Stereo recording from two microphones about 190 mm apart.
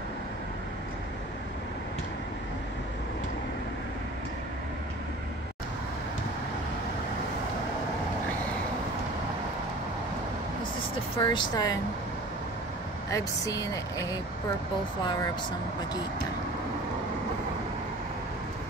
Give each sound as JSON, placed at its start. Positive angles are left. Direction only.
{"t": 11.1, "sound": "speech", "side_deg": 20}
{"t": 13.1, "sound": "speech", "side_deg": 20}